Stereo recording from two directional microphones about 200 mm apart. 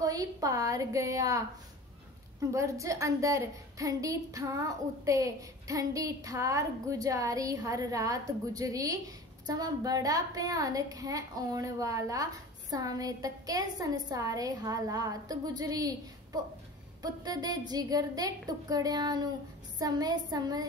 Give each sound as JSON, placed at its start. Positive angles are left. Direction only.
{"t": 0.0, "sound": "a woman's voice", "side_deg": -15}
{"t": 2.5, "sound": "a woman's voice", "side_deg": -15}